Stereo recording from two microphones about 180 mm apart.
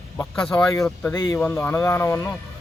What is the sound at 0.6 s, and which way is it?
Speech, 15° left (ahead or behind).